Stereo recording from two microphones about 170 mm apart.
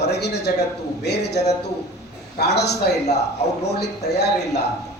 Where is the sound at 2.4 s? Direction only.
75° left (ahead or behind).